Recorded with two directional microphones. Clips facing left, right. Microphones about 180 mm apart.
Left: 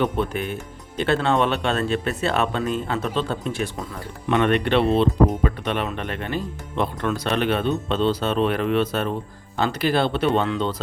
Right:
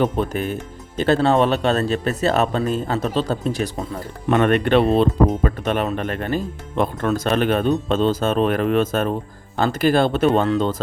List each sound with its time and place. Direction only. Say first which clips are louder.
0.0 s speech: right 3 dB; 40° right (ahead or behind)